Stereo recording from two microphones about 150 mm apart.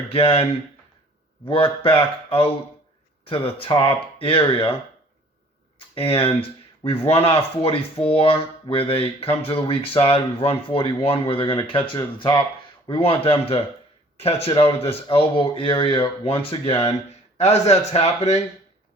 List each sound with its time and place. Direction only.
0.1 s speech: 40° left (ahead or behind)
1.5 s speech: 35° left (ahead or behind)
5.9 s speech: 40° left (ahead or behind)